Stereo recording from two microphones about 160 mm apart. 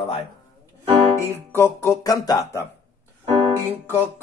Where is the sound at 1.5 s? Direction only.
15° left (ahead or behind).